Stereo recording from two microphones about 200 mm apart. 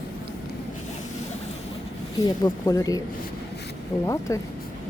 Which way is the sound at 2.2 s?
15° left (ahead or behind).